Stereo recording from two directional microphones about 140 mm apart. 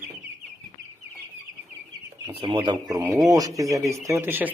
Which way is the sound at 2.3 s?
35° right (ahead or behind).